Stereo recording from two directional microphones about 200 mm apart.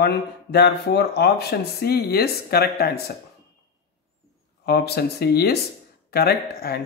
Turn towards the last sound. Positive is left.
turn(degrees=50)  # may be behind; listen again after turning